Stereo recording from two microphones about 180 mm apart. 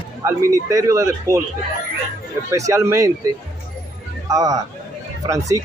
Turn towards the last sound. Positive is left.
turn(degrees=-15)  # may be behind; listen again after turning